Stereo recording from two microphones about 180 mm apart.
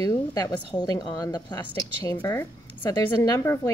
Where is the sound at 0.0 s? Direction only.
20° left (ahead or behind).